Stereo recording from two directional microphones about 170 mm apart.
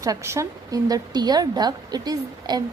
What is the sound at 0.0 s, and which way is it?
A woman's voice, 15° right (ahead or behind).